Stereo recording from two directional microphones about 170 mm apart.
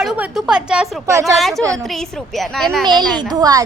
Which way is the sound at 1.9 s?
Centre (ahead or behind).